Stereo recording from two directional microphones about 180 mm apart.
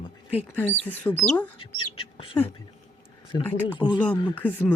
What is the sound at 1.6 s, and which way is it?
Duck, 30° left (ahead or behind).